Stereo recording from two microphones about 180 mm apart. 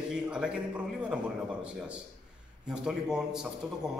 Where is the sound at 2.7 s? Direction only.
5° right (ahead or behind).